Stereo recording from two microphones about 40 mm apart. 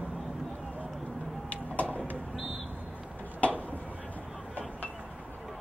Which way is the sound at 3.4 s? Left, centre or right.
Left.